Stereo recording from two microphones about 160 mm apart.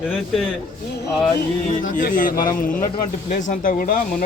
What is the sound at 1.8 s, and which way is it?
Speech, 55° left (ahead or behind).